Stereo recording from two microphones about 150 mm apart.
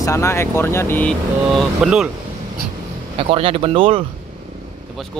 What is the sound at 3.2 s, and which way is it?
Speech, 40° right (ahead or behind).